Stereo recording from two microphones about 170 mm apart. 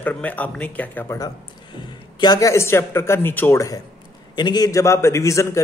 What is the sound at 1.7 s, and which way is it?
A man's voice, 25° left (ahead or behind).